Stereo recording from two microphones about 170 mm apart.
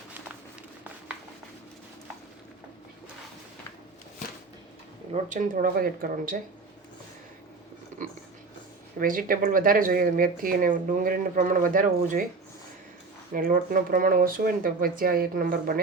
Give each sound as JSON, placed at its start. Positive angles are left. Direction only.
{"t": 5.1, "sound": "speech", "side_deg": -45}
{"t": 9.0, "sound": "speech", "side_deg": -55}
{"t": 13.3, "sound": "speech", "side_deg": -55}